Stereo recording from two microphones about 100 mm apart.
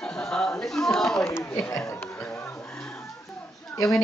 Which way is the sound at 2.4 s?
20° left (ahead or behind).